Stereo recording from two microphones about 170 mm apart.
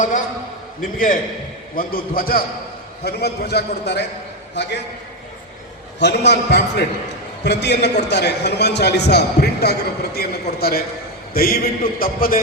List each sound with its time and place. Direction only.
0.8 s a man's voice: 55° left (ahead or behind); by 4.0 s 80° left
4.5 s a man's voice: 90° left
6.0 s a man's voice: 85° left; by 12.4 s 60° left (ahead or behind)